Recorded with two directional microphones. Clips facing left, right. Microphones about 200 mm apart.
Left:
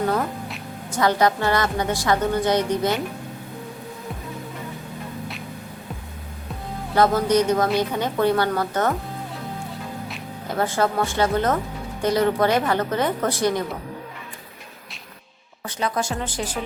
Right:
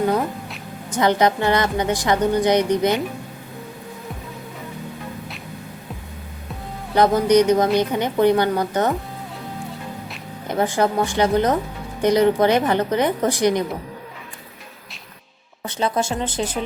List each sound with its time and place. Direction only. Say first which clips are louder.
0.9 s a woman's voice: right 2 dB; 20° right (ahead or behind)
6.9 s a woman's voice: right 3 dB; 20° right (ahead or behind)
10.6 s a woman's voice: right 2 dB; 15° right (ahead or behind)
15.6 s a woman's voice: right 3 dB; 25° right (ahead or behind)